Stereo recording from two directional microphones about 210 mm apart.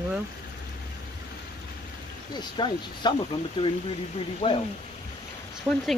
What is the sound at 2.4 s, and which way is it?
Speech, 20° left (ahead or behind).